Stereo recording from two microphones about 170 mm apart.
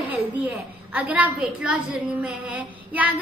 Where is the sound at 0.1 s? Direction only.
10° right (ahead or behind).